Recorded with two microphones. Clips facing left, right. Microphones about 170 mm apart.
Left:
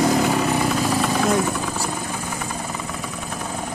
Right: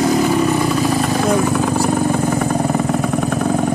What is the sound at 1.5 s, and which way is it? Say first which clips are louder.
Vehicle: right 10 dB; 70° right (ahead or behind).